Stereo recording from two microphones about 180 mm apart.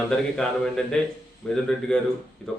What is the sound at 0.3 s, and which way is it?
Speech, 5° left (ahead or behind).